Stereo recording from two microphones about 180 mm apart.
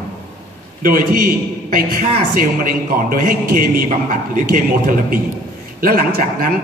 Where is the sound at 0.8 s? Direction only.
55° right (ahead or behind).